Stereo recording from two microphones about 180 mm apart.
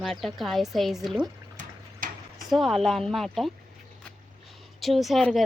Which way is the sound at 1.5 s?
50° right (ahead or behind).